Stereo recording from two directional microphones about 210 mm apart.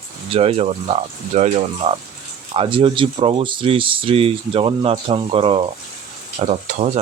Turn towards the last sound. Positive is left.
turn(degrees=-30)  # may be behind; listen again after turning